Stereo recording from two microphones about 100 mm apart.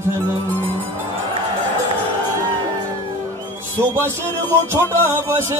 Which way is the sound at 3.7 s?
25° right (ahead or behind).